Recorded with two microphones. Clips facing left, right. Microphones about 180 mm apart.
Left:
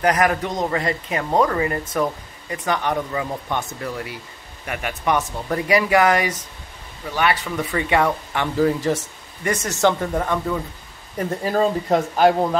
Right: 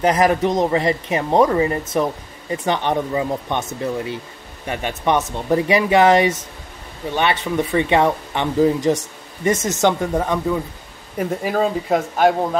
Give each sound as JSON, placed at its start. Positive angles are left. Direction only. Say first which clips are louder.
{"t": 0.0, "sound": "speech", "louder": "right 3 dB", "side_deg": -25}
{"t": 11.1, "sound": "speech", "louder": "right 1 dB", "side_deg": -5}